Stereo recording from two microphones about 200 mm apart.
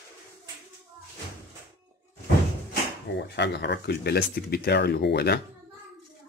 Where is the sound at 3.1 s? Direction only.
60° left (ahead or behind).